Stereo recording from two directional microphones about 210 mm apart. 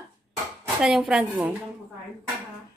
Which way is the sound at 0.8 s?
5° right (ahead or behind).